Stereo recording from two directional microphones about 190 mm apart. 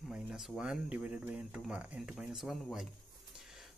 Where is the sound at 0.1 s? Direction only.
5° right (ahead or behind).